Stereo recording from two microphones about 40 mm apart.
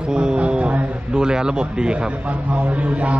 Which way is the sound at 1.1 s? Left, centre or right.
Centre.